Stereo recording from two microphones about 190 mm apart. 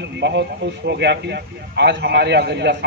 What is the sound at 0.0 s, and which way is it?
A man's voice, 65° right (ahead or behind).